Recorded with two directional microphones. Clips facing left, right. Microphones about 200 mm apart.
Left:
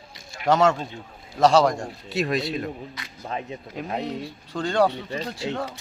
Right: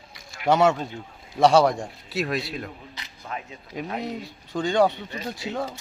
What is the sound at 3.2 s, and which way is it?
Speech, 30° left (ahead or behind).